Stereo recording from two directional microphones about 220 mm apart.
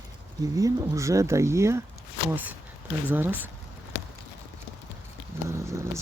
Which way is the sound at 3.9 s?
55° left (ahead or behind).